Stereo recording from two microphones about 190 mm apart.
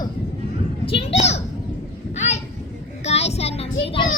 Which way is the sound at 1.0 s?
35° left (ahead or behind).